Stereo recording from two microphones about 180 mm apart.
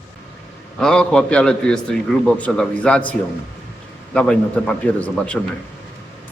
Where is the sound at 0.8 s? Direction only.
5° left (ahead or behind).